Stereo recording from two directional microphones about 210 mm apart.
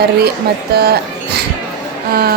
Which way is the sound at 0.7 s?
50° right (ahead or behind).